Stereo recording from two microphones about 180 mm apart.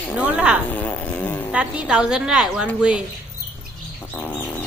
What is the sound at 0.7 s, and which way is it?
Fart, 10° left (ahead or behind).